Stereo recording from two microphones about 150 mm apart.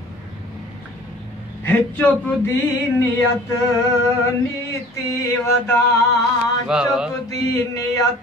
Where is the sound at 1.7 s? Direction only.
10° left (ahead or behind).